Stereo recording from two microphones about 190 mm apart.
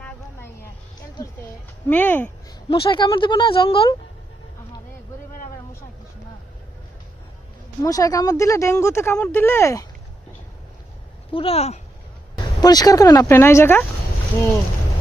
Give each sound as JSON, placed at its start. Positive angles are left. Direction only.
{"t": 0.0, "sound": "a sound", "side_deg": 10}
{"t": 1.9, "sound": "speech", "side_deg": 10}
{"t": 2.6, "sound": "speech", "side_deg": 25}
{"t": 7.8, "sound": "speech", "side_deg": 20}
{"t": 11.3, "sound": "speech", "side_deg": 30}
{"t": 12.5, "sound": "speech", "side_deg": 20}